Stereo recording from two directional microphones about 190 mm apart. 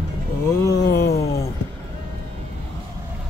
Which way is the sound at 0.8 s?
55° left (ahead or behind).